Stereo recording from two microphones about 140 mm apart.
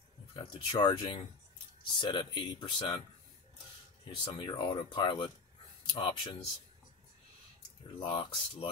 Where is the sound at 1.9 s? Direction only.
35° left (ahead or behind).